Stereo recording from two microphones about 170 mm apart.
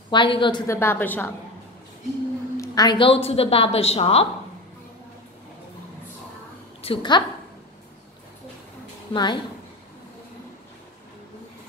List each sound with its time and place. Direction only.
0.1 s a woman's voice: 30° left (ahead or behind)
0.7 s a woman's voice: 15° left (ahead or behind)
2.5 s a woman's voice: 20° left (ahead or behind)
6.8 s a woman's voice: 30° left (ahead or behind)
9.1 s a woman's voice: 25° left (ahead or behind)